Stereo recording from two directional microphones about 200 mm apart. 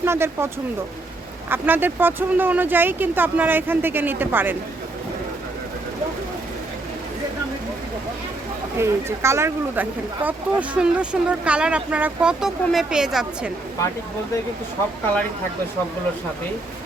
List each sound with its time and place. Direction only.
0.0 s speech: 10° right (ahead or behind)
8.8 s speech: 15° right (ahead or behind)